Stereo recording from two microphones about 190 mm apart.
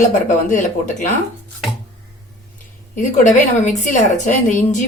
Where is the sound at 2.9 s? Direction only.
40° left (ahead or behind).